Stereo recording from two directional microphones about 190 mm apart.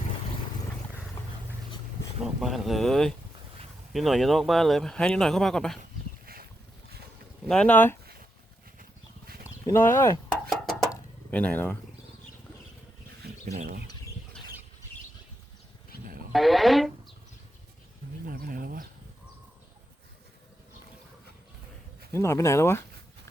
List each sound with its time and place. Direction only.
2.4 s speech: centre (ahead or behind)
6.2 s boat: 50° right (ahead or behind)
7.4 s speech: 5° left (ahead or behind)
9.6 s speech: 10° left (ahead or behind)
10.5 s a sound: centre (ahead or behind)
11.3 s speech: 10° left (ahead or behind)
13.5 s speech: 40° right (ahead or behind)
15.9 s livestock: 55° left (ahead or behind)
16.3 s speech: centre (ahead or behind)
18.3 s bird: 50° right (ahead or behind)
22.1 s speech: 15° left (ahead or behind)